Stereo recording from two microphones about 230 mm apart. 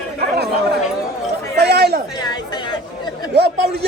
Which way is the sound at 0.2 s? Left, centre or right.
Right.